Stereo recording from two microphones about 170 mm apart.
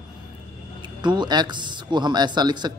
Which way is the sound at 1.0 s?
25° right (ahead or behind).